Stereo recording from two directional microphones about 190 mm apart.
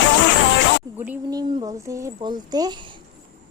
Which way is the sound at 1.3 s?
20° right (ahead or behind).